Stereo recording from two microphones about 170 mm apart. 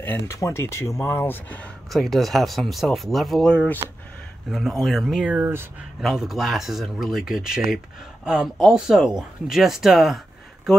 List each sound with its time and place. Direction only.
0.0 s speech: 15° left (ahead or behind); by 5.7 s 15° right (ahead or behind)
5.9 s speech: centre (ahead or behind)